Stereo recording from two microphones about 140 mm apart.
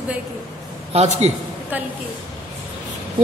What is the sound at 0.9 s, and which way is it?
Speech, 50° right (ahead or behind).